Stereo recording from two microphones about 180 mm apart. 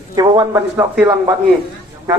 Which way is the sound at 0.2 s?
25° right (ahead or behind).